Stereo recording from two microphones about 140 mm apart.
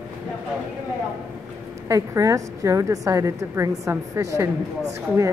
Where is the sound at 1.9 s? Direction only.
25° right (ahead or behind).